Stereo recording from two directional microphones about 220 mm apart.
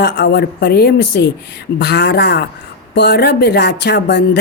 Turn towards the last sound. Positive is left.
turn(degrees=50)  # may be behind; listen again after turning